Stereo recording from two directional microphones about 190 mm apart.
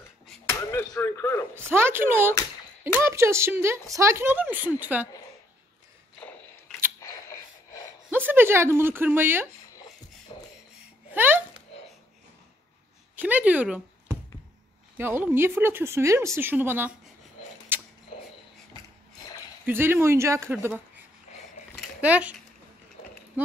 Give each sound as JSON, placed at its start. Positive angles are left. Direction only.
{"t": 0.5, "sound": "a sound", "side_deg": 15}
{"t": 1.5, "sound": "a sound", "side_deg": -10}
{"t": 3.0, "sound": "a woman's voice", "side_deg": -15}
{"t": 7.0, "sound": "music", "side_deg": 15}
{"t": 8.1, "sound": "a woman's voice", "side_deg": -10}
{"t": 10.3, "sound": "a sound", "side_deg": 25}
{"t": 11.1, "sound": "speech", "side_deg": -10}
{"t": 13.1, "sound": "a woman's voice", "side_deg": -10}
{"t": 17.7, "sound": "creak", "side_deg": -10}
{"t": 19.6, "sound": "a woman's voice", "side_deg": -10}
{"t": 22.0, "sound": "a woman's voice", "side_deg": -10}